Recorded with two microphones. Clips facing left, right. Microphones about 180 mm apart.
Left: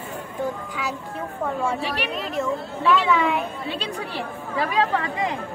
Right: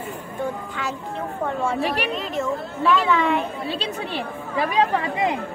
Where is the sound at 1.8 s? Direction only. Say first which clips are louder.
Right 4 dB; 50° right (ahead or behind).